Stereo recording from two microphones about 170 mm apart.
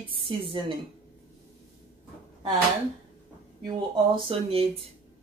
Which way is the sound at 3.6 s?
30° right (ahead or behind).